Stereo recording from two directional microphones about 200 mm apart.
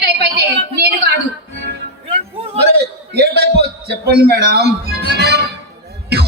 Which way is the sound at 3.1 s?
55° right (ahead or behind).